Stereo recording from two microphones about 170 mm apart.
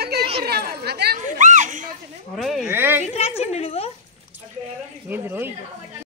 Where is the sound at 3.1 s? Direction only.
40° left (ahead or behind).